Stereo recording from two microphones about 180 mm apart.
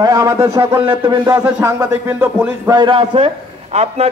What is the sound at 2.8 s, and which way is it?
A man's voice, 30° right (ahead or behind).